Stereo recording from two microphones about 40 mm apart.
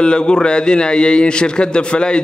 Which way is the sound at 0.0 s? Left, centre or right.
Left.